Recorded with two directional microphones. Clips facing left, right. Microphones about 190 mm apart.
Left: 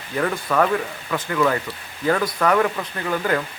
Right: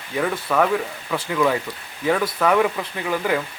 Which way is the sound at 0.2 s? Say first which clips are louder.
Even; 5° right (ahead or behind).